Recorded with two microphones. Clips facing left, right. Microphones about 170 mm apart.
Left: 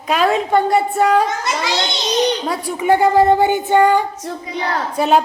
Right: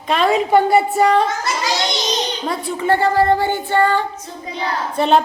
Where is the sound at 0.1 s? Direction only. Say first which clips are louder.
Right 1 dB; 5° left (ahead or behind).